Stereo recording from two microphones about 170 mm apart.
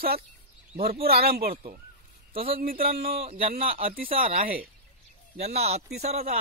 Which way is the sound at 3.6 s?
35° right (ahead or behind).